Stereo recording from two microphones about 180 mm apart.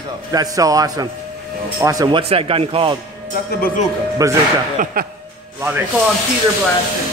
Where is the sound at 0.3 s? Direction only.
20° right (ahead or behind).